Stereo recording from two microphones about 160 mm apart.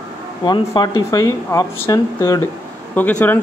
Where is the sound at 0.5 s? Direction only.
25° left (ahead or behind).